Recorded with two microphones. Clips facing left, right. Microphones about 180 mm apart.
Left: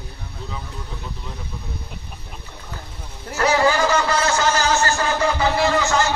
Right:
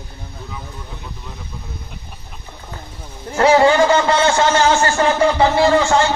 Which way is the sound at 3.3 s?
30° right (ahead or behind).